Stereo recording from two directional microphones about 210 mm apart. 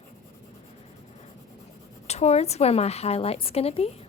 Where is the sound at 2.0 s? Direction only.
30° left (ahead or behind).